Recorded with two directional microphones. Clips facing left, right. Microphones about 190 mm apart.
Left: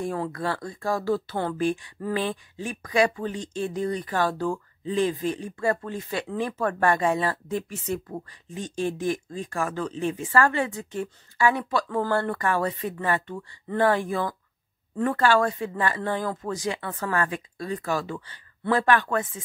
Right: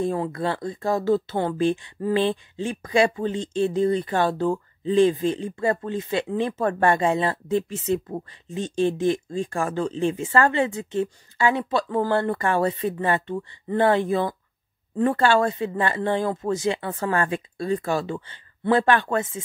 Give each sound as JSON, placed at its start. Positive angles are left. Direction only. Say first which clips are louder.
{"t": 0.0, "sound": "speech", "louder": "right 4 dB", "side_deg": -25}